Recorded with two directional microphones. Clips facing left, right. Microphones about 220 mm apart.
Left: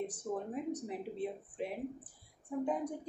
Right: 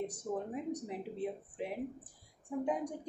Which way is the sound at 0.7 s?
10° right (ahead or behind).